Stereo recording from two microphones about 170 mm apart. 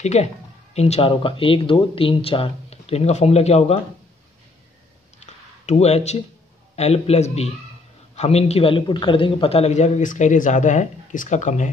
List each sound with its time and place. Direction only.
0.0 s speech: 40° left (ahead or behind)
5.2 s a sound: 40° left (ahead or behind)
6.7 s a man's voice: 35° left (ahead or behind)